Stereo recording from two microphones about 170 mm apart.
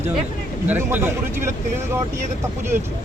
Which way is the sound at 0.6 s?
10° right (ahead or behind).